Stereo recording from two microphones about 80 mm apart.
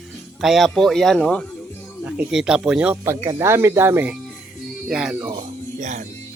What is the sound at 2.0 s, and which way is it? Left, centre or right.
Speech, centre.